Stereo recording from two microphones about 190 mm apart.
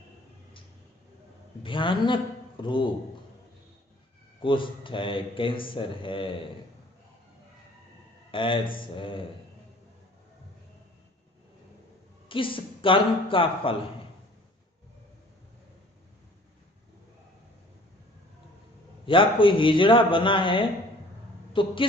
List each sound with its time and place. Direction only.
1.6 s a man's voice: 25° left (ahead or behind)
4.4 s speech: 25° left (ahead or behind)
8.3 s speech: 25° left (ahead or behind)
12.3 s speech: 25° left (ahead or behind)
19.0 s speech: 25° left (ahead or behind)